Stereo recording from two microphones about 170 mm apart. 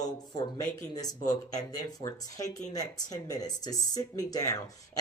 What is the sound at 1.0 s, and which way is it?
Speech, 20° left (ahead or behind).